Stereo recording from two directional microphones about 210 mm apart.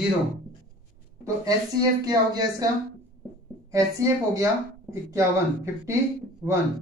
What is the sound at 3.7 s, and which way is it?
Speech, 15° right (ahead or behind).